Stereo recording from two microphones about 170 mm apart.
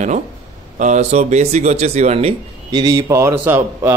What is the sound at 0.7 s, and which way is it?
Speech, 45° right (ahead or behind).